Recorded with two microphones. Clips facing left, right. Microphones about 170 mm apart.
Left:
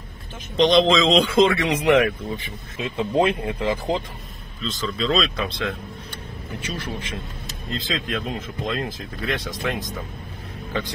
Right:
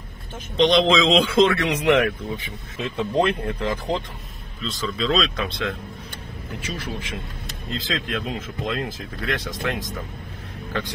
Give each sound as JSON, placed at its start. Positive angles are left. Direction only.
{"t": 0.6, "sound": "speech", "side_deg": 0}